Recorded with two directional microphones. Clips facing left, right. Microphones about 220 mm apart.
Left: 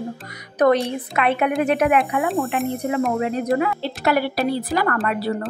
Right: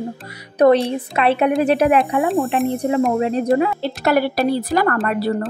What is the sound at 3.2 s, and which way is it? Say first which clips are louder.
Speech: right 4 dB; 30° right (ahead or behind).